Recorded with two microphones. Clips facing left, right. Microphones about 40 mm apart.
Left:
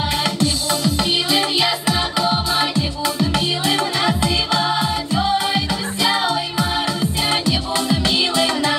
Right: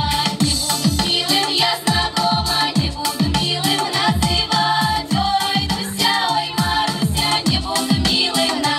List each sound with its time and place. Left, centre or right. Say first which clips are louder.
1.6 s music: right 1 dB; centre